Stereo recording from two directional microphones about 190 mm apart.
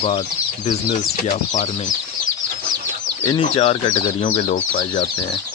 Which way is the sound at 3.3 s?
30° left (ahead or behind).